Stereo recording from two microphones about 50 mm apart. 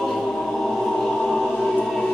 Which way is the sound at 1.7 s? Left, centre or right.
Centre.